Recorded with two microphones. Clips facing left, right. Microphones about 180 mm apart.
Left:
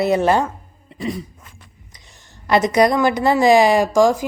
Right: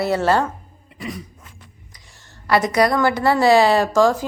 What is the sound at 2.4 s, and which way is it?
A woman's voice, 20° left (ahead or behind).